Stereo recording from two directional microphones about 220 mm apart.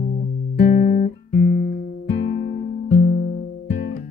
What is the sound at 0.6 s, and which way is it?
Guitar, 40° left (ahead or behind).